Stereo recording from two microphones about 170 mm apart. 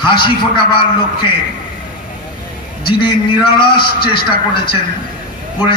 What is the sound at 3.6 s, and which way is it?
A man's voice, 30° left (ahead or behind).